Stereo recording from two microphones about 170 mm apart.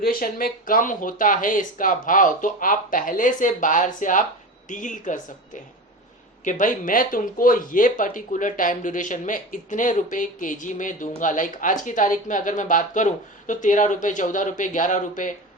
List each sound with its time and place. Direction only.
0.0 s speech: 60° left (ahead or behind)
6.4 s speech: 50° left (ahead or behind)